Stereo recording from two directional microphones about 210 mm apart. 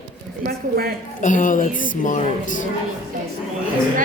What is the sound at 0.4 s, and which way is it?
Speech, 45° right (ahead or behind).